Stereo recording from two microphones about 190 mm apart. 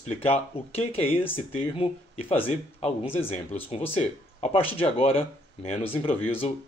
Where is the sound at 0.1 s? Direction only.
30° left (ahead or behind).